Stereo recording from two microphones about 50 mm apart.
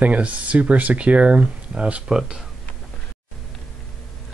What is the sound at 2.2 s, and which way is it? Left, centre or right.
Speech, centre.